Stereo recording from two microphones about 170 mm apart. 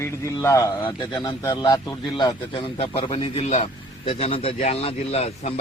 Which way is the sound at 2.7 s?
35° left (ahead or behind).